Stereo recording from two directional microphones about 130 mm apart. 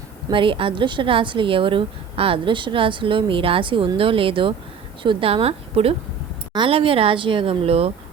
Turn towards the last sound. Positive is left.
turn(degrees=-50)  # may be behind; listen again after turning